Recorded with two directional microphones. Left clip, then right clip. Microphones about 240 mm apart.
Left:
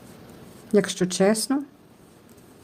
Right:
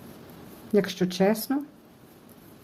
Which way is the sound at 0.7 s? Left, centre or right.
Centre.